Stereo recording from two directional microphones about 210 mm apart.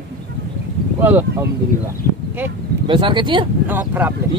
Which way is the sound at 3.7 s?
10° right (ahead or behind).